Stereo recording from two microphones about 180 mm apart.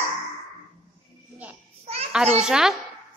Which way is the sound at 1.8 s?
35° right (ahead or behind).